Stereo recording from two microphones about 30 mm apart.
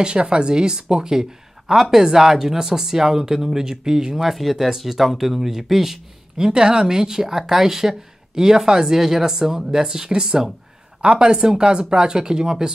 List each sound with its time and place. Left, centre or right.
0.0 s speech: right
4.2 s speech: centre
4.6 s speech: centre
6.3 s speech: right
11.0 s speech: right